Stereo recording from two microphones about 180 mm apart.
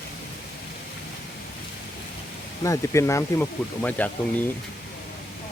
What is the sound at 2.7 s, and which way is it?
Speech, 15° left (ahead or behind).